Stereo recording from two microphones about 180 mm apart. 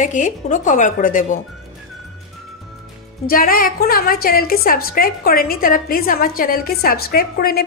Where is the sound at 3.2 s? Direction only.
55° left (ahead or behind).